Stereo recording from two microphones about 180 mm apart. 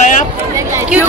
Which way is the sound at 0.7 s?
10° right (ahead or behind).